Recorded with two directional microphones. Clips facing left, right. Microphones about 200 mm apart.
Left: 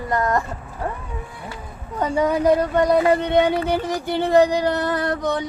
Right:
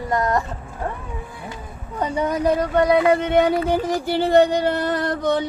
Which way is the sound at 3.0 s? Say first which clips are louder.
Even; 30° left (ahead or behind).